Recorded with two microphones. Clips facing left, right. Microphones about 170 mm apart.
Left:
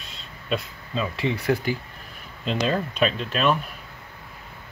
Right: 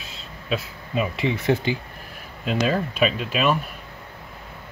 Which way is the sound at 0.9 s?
15° right (ahead or behind).